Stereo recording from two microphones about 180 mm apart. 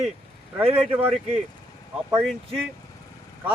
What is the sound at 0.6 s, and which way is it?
Speech, 30° right (ahead or behind).